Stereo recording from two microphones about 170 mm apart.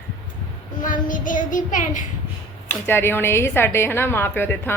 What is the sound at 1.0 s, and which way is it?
Child singing, 50° left (ahead or behind).